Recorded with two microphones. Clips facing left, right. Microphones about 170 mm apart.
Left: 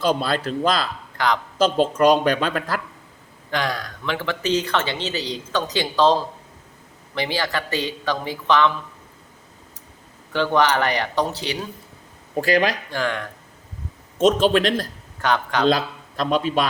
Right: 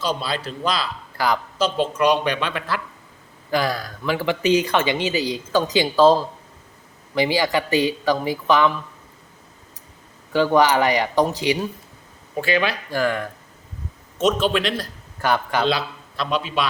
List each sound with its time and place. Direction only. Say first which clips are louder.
0.0 s speech: left 4 dB; 50° left (ahead or behind)
1.1 s speech: even; 5° right (ahead or behind)
1.5 s speech: left 3 dB; 45° left (ahead or behind)
3.5 s speech: right 3 dB; 5° right (ahead or behind)
7.2 s speech: right 5 dB; 10° right (ahead or behind)
10.3 s speech: right 3 dB; 10° right (ahead or behind)
12.4 s speech: left 2 dB; 35° left (ahead or behind)
12.9 s speech: right 3 dB; 5° right (ahead or behind)
14.2 s speech: left 3 dB; 45° left (ahead or behind)
15.2 s speech: right 1 dB; 10° right (ahead or behind)
15.6 s a man's voice: left 3 dB; 45° left (ahead or behind)